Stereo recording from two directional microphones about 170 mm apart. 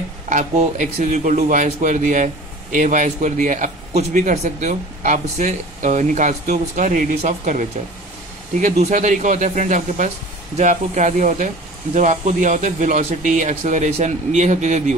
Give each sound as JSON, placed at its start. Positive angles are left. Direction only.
{"t": 0.3, "sound": "speech", "side_deg": -45}